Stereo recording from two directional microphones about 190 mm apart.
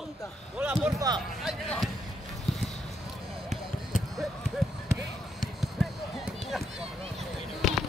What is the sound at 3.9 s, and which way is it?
Basketball bounce, 45° left (ahead or behind).